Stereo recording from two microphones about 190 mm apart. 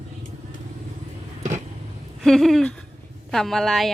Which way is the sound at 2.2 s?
Centre (ahead or behind).